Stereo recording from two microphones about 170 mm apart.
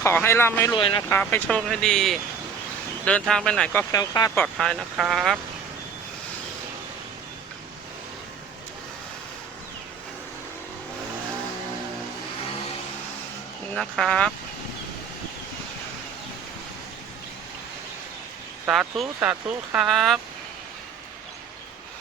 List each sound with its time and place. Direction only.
0.0 s speech: 15° left (ahead or behind)
0.7 s speech: 30° left (ahead or behind)
1.1 s speech: 10° left (ahead or behind)
3.9 s speech: 20° left (ahead or behind)
4.5 s speech: 5° left (ahead or behind)
13.7 s speech: 5° left (ahead or behind)
18.6 s speech: 5° right (ahead or behind)